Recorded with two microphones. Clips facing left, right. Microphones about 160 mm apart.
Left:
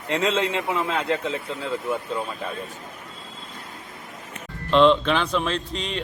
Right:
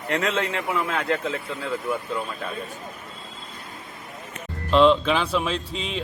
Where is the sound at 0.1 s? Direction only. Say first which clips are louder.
Left 2 dB; 20° left (ahead or behind).